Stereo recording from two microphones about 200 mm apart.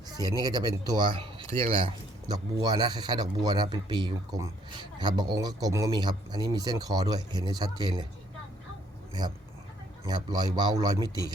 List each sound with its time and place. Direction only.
0.1 s speech: 20° right (ahead or behind)
10.1 s speech: 20° right (ahead or behind)